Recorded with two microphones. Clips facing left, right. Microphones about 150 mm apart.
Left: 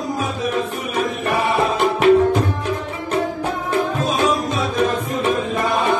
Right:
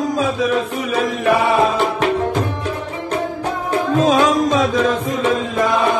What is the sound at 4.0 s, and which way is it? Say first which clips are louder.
Music: right 5 dB; 90° right.